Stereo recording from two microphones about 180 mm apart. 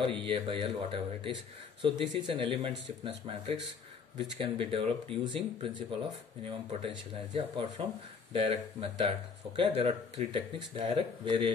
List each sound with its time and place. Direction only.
0.2 s a man's voice: 30° right (ahead or behind)